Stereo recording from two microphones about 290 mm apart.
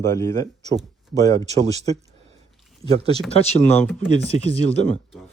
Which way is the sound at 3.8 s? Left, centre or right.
Centre.